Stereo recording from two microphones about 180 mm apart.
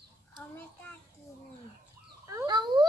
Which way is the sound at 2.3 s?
20° right (ahead or behind).